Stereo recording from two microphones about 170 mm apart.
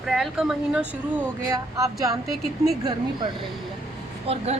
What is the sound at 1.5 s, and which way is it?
A woman's voice, 20° right (ahead or behind).